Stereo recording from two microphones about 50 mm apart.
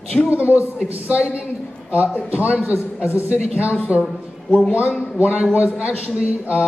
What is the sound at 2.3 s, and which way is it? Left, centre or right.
Speech, right.